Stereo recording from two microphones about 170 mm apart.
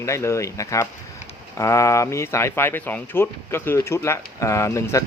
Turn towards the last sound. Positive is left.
turn(degrees=20)  # may be behind; listen again after turning